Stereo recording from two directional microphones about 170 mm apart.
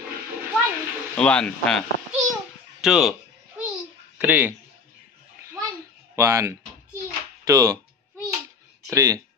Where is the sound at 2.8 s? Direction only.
Centre (ahead or behind).